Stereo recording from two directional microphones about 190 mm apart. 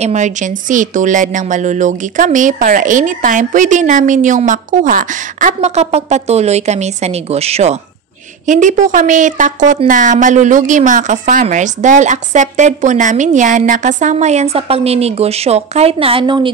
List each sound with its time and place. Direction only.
0.0 s speech: 40° right (ahead or behind)